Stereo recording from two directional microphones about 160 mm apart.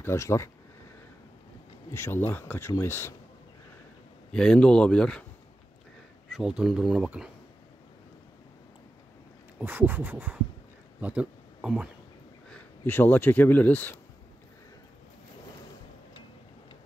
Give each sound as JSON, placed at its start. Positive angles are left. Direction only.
{"t": 0.0, "sound": "speech", "side_deg": 15}
{"t": 1.9, "sound": "speech", "side_deg": 15}
{"t": 4.3, "sound": "speech", "side_deg": 5}
{"t": 6.3, "sound": "speech", "side_deg": -5}
{"t": 9.6, "sound": "a sound", "side_deg": -10}
{"t": 11.0, "sound": "speech", "side_deg": -10}
{"t": 12.4, "sound": "speech", "side_deg": 10}